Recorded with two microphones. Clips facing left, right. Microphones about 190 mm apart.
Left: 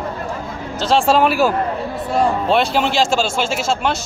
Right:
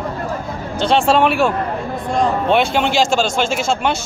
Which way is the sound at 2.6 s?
Centre (ahead or behind).